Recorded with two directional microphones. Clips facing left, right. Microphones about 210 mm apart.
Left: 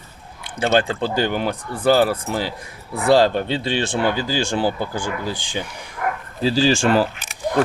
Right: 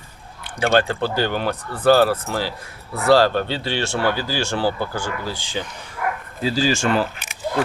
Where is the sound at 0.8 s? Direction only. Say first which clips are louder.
Even; 15° left (ahead or behind).